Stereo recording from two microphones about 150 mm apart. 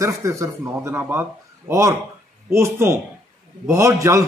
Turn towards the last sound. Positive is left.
turn(degrees=-20)  # may be behind; listen again after turning